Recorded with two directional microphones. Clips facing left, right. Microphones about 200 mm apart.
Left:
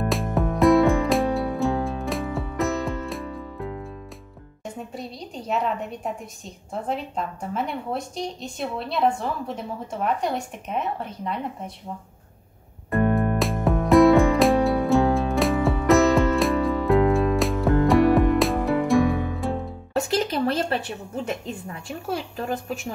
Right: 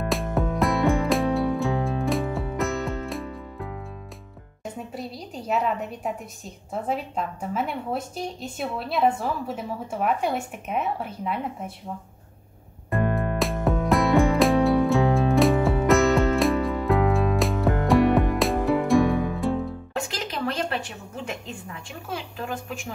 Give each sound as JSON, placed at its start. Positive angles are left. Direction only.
{"t": 0.1, "sound": "music", "side_deg": 0}
{"t": 4.9, "sound": "a sound", "side_deg": -5}
{"t": 6.7, "sound": "a woman's voice", "side_deg": -5}
{"t": 12.9, "sound": "music", "side_deg": 0}
{"t": 19.9, "sound": "a sound", "side_deg": 40}
{"t": 21.3, "sound": "a woman's voice", "side_deg": 40}